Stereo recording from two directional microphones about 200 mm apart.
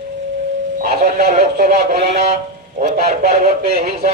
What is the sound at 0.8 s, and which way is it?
A man's voice, 40° right (ahead or behind).